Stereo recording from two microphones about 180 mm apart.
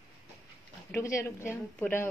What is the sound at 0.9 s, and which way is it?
Speech, 15° left (ahead or behind).